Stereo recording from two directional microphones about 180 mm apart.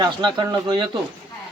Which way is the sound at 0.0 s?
25° right (ahead or behind).